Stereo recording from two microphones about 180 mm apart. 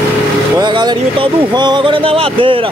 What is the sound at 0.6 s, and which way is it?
Speech, 25° right (ahead or behind).